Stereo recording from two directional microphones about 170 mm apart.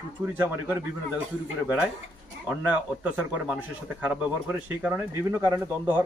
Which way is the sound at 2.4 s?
10° right (ahead or behind).